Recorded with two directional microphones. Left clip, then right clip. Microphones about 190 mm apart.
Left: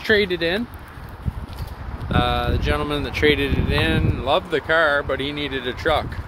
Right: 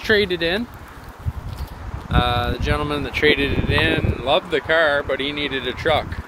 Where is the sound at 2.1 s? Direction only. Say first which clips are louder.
Right 1 dB; 15° left (ahead or behind).